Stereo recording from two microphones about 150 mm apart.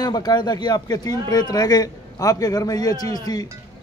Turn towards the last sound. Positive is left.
turn(degrees=25)  # may be behind; listen again after turning